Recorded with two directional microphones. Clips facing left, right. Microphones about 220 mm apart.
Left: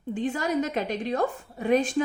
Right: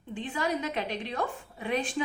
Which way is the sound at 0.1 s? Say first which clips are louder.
Left 5 dB; 45° left (ahead or behind).